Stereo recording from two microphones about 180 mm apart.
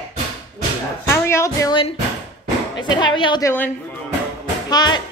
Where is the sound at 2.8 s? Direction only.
25° left (ahead or behind).